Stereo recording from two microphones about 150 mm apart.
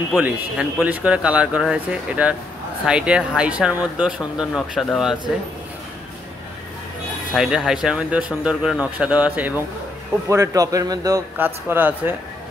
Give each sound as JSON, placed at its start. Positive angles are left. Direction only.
{"t": 0.1, "sound": "speech", "side_deg": -5}
{"t": 7.3, "sound": "speech", "side_deg": -5}
{"t": 10.3, "sound": "a man's voice", "side_deg": -20}